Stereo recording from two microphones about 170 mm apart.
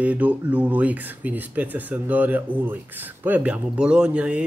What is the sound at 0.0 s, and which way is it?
Speech, 10° right (ahead or behind).